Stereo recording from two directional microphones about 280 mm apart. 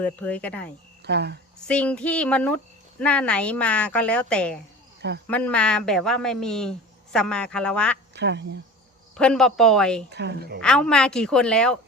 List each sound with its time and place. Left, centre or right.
0.0 s a woman's voice: centre
1.0 s a woman's voice: right
1.6 s a woman's voice: centre
8.1 s a woman's voice: right
9.1 s a woman's voice: centre
10.1 s a woman's voice: right
10.6 s a woman's voice: centre